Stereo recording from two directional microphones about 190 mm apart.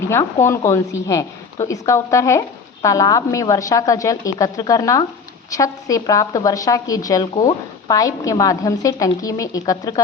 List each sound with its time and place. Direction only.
0.1 s a woman's voice: 15° left (ahead or behind)